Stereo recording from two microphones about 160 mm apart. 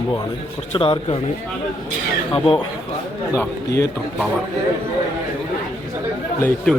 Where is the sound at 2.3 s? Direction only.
35° left (ahead or behind).